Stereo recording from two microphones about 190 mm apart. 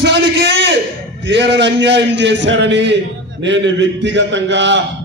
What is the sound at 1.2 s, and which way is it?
A man's voice, 65° right (ahead or behind).